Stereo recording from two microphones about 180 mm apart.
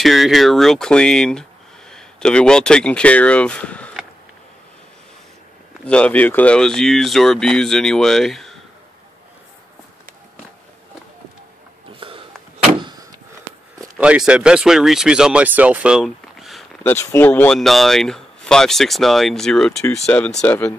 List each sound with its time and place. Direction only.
0.0 s speech: centre (ahead or behind)
5.9 s speech: 5° left (ahead or behind)
12.0 s a sound: 30° right (ahead or behind)
13.7 s speech: 5° right (ahead or behind)
16.8 s speech: 15° left (ahead or behind)